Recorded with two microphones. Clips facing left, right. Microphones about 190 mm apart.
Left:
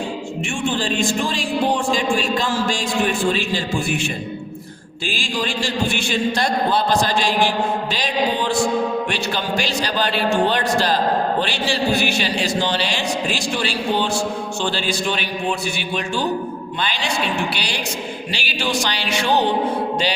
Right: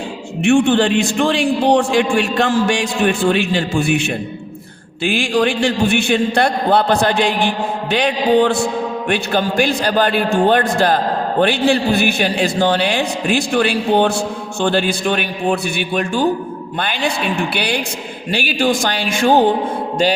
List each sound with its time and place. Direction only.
0.4 s a man's voice: 70° right (ahead or behind); by 19.5 s 50° right (ahead or behind)